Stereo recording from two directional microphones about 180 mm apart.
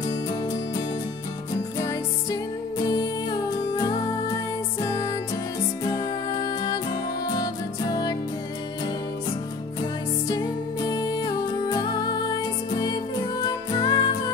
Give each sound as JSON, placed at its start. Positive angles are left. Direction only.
{"t": 0.0, "sound": "music", "side_deg": 20}
{"t": 2.8, "sound": "music", "side_deg": 25}
{"t": 10.2, "sound": "music", "side_deg": 20}